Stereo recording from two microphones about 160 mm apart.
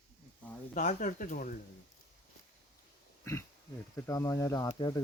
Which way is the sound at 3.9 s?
20° left (ahead or behind).